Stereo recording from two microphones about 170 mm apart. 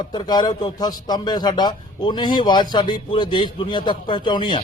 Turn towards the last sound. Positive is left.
turn(degrees=25)  # may be behind; listen again after turning